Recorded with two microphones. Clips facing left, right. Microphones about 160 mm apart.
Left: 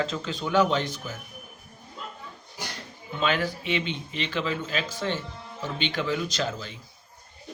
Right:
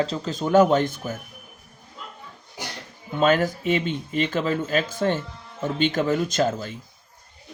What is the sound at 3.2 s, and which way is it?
Speech, 45° right (ahead or behind).